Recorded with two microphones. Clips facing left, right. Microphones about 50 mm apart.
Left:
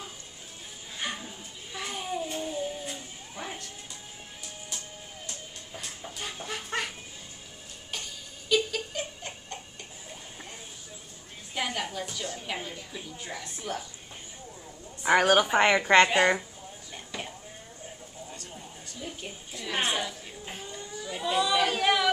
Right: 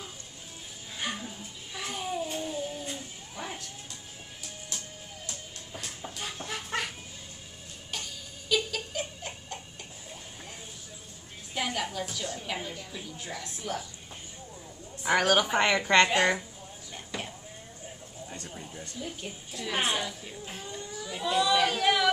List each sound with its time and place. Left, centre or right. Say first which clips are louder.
0.9 s a sound: even; centre
4.4 s music: even; centre
7.9 s giggle: even; centre
11.5 s a woman's voice: even; centre
15.1 s a woman's voice: left 3 dB; centre
16.9 s vehicle: right 1 dB; centre
18.9 s a sound: even; centre
19.6 s a woman's voice: even; centre
20.4 s a sound: even; centre